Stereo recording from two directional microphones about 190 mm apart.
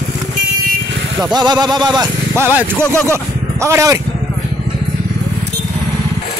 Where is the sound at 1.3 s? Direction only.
20° right (ahead or behind).